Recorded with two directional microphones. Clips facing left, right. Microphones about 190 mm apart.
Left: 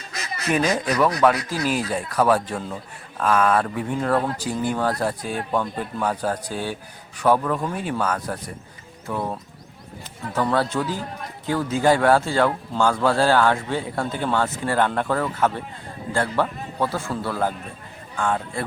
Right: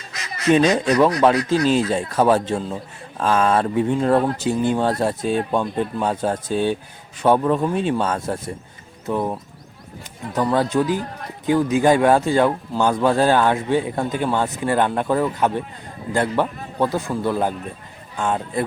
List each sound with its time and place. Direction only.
0.5 s a man's voice: 25° right (ahead or behind)
10.5 s a man's voice: 15° right (ahead or behind)